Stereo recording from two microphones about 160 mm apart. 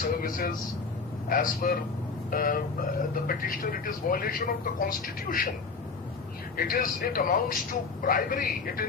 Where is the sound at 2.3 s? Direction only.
60° left (ahead or behind).